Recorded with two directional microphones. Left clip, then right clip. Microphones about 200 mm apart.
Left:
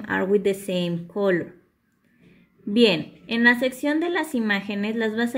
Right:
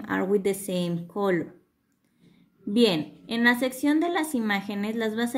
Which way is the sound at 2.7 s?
Centre (ahead or behind).